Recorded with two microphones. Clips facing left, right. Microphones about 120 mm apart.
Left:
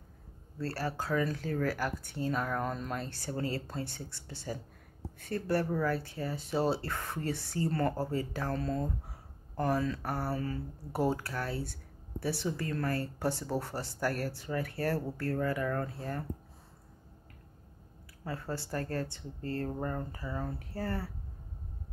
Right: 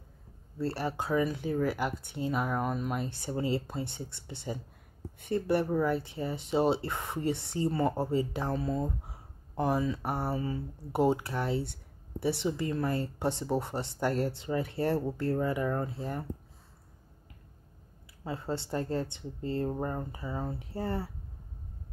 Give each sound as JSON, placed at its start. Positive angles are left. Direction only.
{"t": 0.6, "sound": "speech", "side_deg": -20}
{"t": 18.2, "sound": "speech", "side_deg": -20}